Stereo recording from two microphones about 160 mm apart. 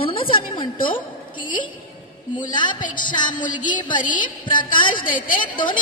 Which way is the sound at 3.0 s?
55° left (ahead or behind).